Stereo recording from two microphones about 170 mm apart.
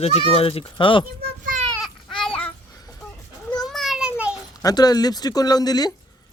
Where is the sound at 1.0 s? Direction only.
55° right (ahead or behind).